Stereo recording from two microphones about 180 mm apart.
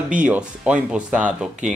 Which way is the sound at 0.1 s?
5° right (ahead or behind).